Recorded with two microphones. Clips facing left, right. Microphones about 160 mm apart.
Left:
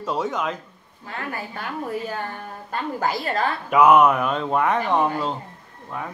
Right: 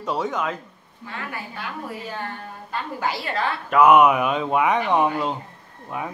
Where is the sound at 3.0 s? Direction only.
40° left (ahead or behind).